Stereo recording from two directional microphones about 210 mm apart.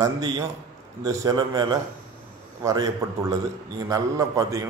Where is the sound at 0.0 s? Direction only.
15° right (ahead or behind).